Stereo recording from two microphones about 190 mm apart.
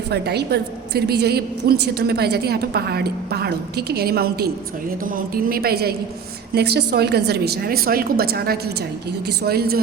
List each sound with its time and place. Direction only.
0.1 s a woman's voice: 60° right (ahead or behind)